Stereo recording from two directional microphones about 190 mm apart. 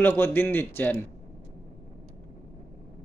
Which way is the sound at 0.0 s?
10° left (ahead or behind).